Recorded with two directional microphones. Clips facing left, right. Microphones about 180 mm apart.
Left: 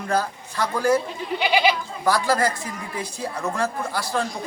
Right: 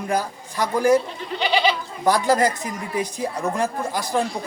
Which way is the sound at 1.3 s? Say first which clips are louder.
Even; 10° left (ahead or behind).